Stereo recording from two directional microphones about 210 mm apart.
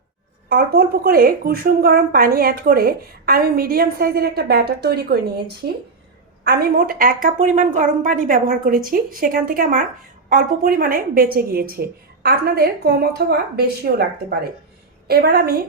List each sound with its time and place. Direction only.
0.4 s a woman's voice: 45° right (ahead or behind)
6.4 s a woman's voice: 50° right (ahead or behind)